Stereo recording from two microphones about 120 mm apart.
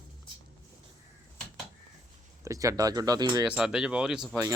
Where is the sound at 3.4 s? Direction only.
5° right (ahead or behind).